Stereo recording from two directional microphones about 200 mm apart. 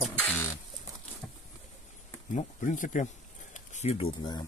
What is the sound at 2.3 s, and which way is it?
Speech, 40° left (ahead or behind).